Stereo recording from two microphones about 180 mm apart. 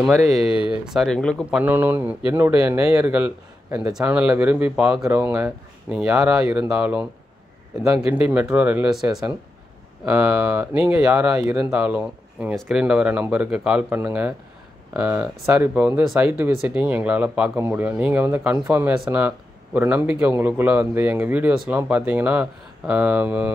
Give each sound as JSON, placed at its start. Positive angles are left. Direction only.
{"t": 0.0, "sound": "speech", "side_deg": 0}
{"t": 1.6, "sound": "speech", "side_deg": -10}
{"t": 8.3, "sound": "speech", "side_deg": -10}
{"t": 11.3, "sound": "speech", "side_deg": -20}
{"t": 11.6, "sound": "speech", "side_deg": -5}